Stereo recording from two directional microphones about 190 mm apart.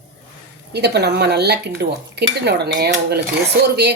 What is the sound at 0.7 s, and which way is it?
Speech, 60° right (ahead or behind).